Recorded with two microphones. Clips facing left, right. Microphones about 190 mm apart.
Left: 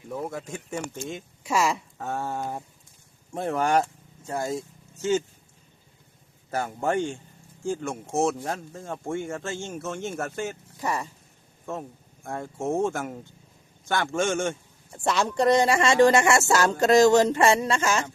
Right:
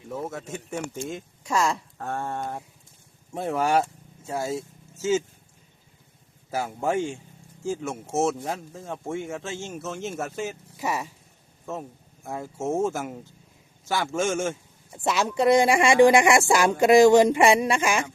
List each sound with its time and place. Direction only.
0.3 s speech: centre (ahead or behind)
6.5 s a man's voice: 5° right (ahead or behind)